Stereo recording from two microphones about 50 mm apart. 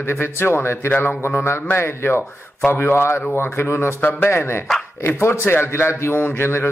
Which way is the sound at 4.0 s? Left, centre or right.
Left.